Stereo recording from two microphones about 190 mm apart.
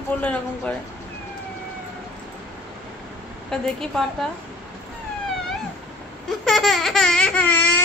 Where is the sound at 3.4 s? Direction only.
5° left (ahead or behind).